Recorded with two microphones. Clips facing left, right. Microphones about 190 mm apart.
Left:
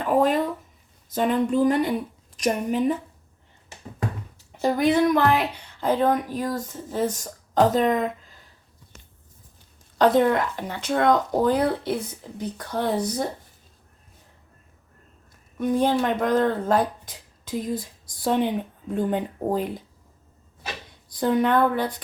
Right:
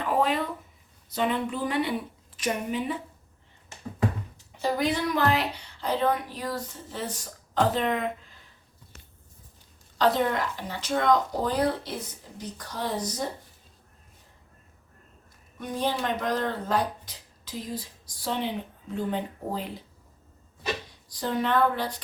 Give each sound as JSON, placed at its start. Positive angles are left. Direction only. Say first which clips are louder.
{"t": 1.1, "sound": "speech", "louder": "left 6 dB", "side_deg": 45}
{"t": 4.6, "sound": "speech", "louder": "left 7 dB", "side_deg": 50}
{"t": 10.0, "sound": "speech", "louder": "left 6 dB", "side_deg": 55}
{"t": 15.5, "sound": "speech", "louder": "left 8 dB", "side_deg": 55}
{"t": 21.1, "sound": "speech", "louder": "left 6 dB", "side_deg": 55}